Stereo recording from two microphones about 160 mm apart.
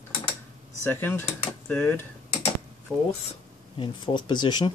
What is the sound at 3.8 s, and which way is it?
Speech, 30° left (ahead or behind).